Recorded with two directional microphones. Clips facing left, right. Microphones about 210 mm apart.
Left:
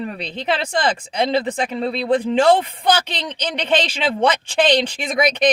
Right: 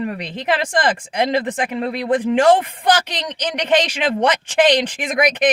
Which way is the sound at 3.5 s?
10° right (ahead or behind).